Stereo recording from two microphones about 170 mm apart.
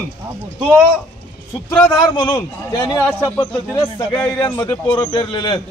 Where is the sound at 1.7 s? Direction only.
25° left (ahead or behind).